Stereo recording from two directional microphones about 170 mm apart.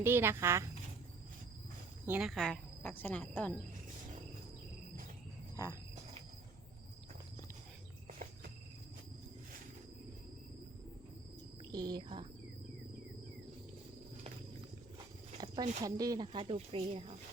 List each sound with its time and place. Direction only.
0.0 s speech: 15° right (ahead or behind)
2.0 s speech: 5° right (ahead or behind)
5.6 s cricket: 20° left (ahead or behind)
11.7 s speech: 25° right (ahead or behind)
15.4 s a sound: 25° right (ahead or behind)
15.8 s speech: 20° right (ahead or behind); by 17.2 s 40° right (ahead or behind)